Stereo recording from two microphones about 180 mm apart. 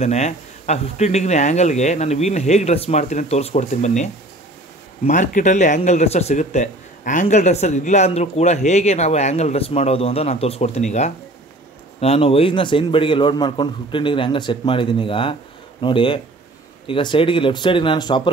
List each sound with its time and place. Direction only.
0.0 s a man's voice: 35° left (ahead or behind)